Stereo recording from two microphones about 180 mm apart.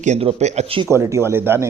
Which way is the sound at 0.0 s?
35° right (ahead or behind).